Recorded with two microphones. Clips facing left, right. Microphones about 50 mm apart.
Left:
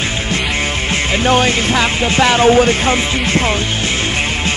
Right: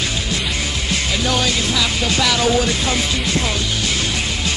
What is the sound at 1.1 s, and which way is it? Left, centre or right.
Music, left.